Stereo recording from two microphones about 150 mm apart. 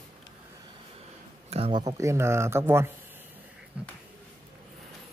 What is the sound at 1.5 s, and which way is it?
Speech, 40° right (ahead or behind).